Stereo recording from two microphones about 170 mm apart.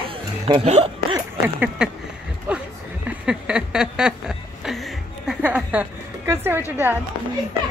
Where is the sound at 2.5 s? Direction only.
5° right (ahead or behind).